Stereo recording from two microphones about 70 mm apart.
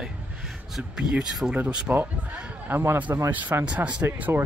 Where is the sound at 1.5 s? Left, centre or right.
Centre.